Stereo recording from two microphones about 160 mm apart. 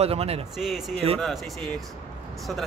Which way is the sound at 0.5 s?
Centre (ahead or behind).